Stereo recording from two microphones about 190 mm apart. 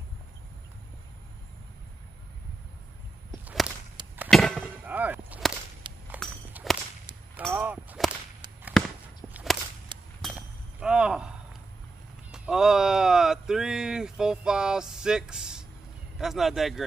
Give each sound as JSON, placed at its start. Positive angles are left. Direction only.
{"t": 4.3, "sound": "a sound", "side_deg": 0}
{"t": 4.8, "sound": "chop", "side_deg": -10}
{"t": 5.9, "sound": "walk", "side_deg": -25}
{"t": 6.5, "sound": "whip", "side_deg": 0}
{"t": 9.3, "sound": "whip", "side_deg": 0}
{"t": 9.9, "sound": "walk", "side_deg": -25}
{"t": 10.2, "sound": "a sound", "side_deg": -5}
{"t": 12.3, "sound": "a sound", "side_deg": -5}
{"t": 16.2, "sound": "speech", "side_deg": 0}